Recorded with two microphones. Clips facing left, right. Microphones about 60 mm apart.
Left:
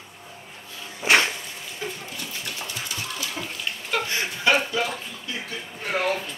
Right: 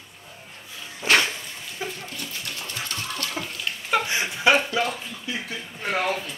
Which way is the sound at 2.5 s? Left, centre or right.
Centre.